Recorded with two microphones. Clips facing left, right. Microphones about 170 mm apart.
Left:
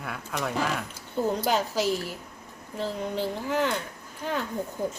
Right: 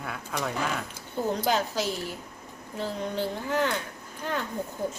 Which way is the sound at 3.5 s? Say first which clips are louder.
Left 1 dB; 5° left (ahead or behind).